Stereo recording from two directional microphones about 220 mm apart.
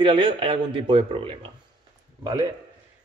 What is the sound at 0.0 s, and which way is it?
Speech, 25° right (ahead or behind).